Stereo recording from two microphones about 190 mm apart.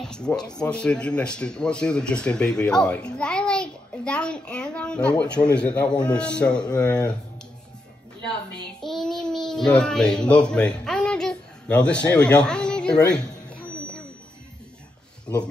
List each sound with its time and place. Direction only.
0.0 s speech: 5° left (ahead or behind)
6.6 s speech: 20° left (ahead or behind)
8.8 s a child's voice: centre (ahead or behind)
15.3 s speech: 10° left (ahead or behind)